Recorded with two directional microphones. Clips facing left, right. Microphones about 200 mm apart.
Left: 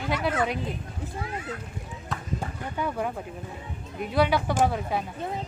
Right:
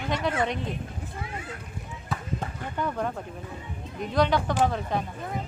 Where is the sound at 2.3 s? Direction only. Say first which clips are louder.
Left 1 dB; 10° left (ahead or behind).